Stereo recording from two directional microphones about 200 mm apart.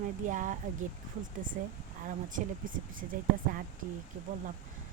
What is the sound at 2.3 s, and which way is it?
Speech, 40° right (ahead or behind).